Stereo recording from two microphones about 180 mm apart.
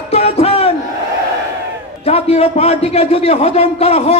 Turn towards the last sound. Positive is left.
turn(degrees=35)  # may be behind; listen again after turning